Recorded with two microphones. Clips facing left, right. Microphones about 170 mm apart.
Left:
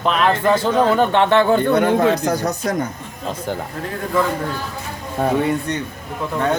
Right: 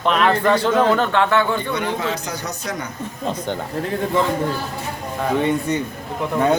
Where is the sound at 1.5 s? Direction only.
55° left (ahead or behind).